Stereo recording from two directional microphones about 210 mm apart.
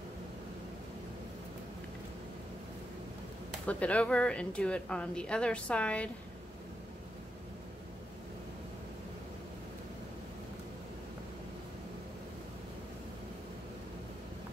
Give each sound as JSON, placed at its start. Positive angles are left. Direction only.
{"t": 3.6, "sound": "speech", "side_deg": 5}